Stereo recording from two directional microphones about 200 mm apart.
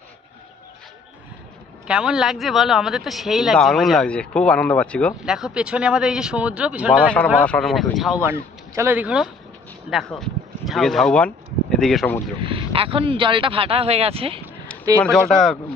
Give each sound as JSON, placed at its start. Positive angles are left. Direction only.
{"t": 1.9, "sound": "a man's voice", "side_deg": -5}
{"t": 12.4, "sound": "a man's voice", "side_deg": -25}
{"t": 15.0, "sound": "a man's voice", "side_deg": 0}